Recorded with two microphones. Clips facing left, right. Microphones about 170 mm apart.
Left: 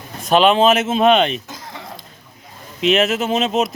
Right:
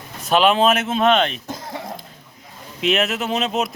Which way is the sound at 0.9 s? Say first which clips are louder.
Left 3 dB; 10° left (ahead or behind).